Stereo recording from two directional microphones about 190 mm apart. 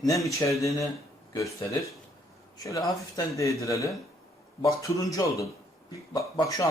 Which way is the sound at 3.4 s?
15° left (ahead or behind).